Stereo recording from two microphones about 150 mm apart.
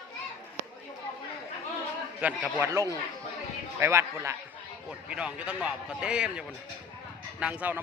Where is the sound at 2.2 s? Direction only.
10° right (ahead or behind).